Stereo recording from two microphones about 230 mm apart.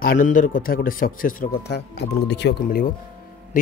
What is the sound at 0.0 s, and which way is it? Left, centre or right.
Speech, left.